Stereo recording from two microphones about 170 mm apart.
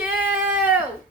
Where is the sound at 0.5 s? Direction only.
10° right (ahead or behind).